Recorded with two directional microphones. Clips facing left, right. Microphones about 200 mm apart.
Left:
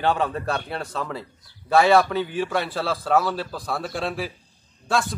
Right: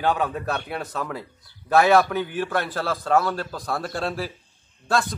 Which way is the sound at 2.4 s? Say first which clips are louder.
Even; 15° left (ahead or behind).